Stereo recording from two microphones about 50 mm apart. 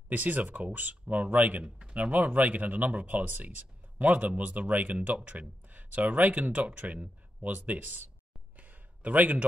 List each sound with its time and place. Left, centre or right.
0.1 s speech: right
1.6 s speech: centre
2.0 s speech: right
8.5 s a sound: right